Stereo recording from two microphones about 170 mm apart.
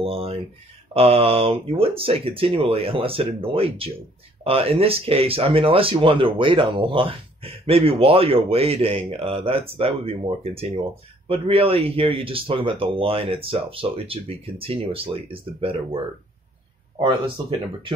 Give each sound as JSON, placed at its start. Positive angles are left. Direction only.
{"t": 0.0, "sound": "a sound", "side_deg": -35}
{"t": 0.9, "sound": "speech", "side_deg": -35}
{"t": 17.0, "sound": "speech", "side_deg": -30}